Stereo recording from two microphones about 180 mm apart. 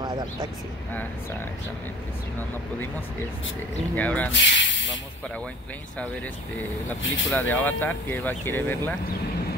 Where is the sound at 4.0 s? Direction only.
10° left (ahead or behind).